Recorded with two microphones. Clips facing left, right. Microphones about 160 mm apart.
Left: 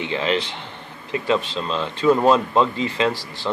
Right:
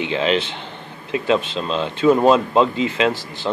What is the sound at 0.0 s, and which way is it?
Speech, 20° right (ahead or behind).